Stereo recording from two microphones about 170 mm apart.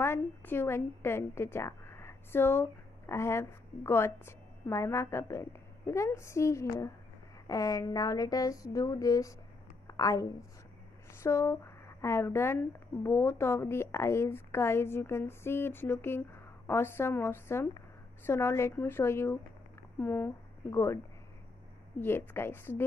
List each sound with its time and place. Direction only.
0.0 s a woman's voice: 15° left (ahead or behind)
11.2 s a woman's voice: 15° left (ahead or behind)
22.0 s a woman's voice: 15° left (ahead or behind)